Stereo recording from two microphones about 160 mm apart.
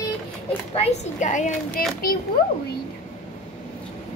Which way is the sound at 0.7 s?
40° left (ahead or behind).